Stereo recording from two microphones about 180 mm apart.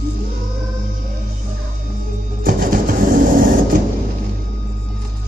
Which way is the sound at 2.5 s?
50° right (ahead or behind).